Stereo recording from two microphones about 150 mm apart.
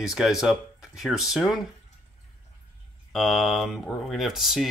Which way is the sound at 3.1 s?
Centre (ahead or behind).